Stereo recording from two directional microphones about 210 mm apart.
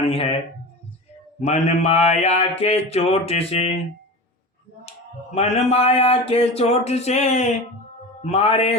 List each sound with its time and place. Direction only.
0.0 s a man's voice: 25° left (ahead or behind)
1.4 s mantra: 30° left (ahead or behind)
4.9 s speech: 30° left (ahead or behind)
8.2 s mantra: 30° left (ahead or behind)